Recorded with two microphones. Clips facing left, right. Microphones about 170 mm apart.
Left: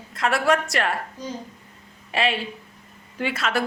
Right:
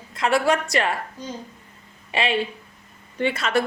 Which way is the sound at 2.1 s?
Centre (ahead or behind).